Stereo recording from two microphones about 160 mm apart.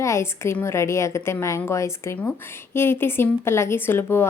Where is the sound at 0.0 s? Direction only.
15° left (ahead or behind).